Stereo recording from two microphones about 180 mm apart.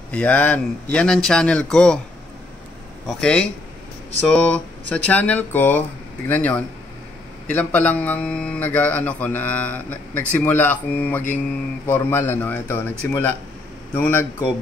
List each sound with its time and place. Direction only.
0.1 s speech: 5° left (ahead or behind)
3.1 s speech: 5° left (ahead or behind)